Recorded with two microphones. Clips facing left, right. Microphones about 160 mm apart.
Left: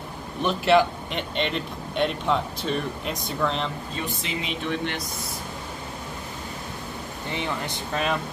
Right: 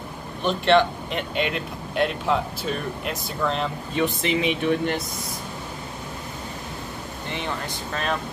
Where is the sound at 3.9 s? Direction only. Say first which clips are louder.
Right 8 dB; 65° right (ahead or behind).